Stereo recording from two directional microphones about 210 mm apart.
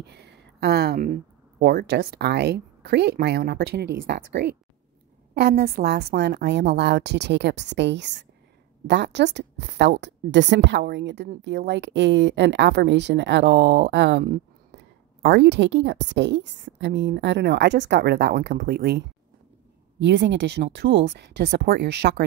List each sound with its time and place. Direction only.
0.0 s a woman's voice: 55° right (ahead or behind)